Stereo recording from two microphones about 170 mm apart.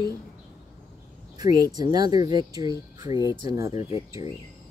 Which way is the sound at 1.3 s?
20° right (ahead or behind).